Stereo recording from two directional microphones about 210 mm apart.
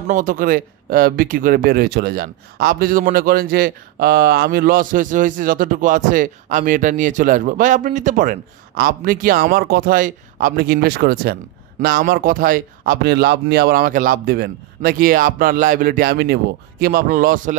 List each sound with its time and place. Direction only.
0.1 s speech: 40° right (ahead or behind)